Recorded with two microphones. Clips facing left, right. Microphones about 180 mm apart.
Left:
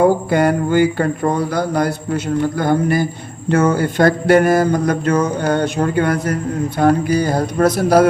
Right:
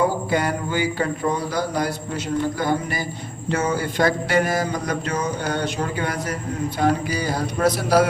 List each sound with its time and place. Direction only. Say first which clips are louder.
0.0 s mantra: left 7 dB; 55° left (ahead or behind)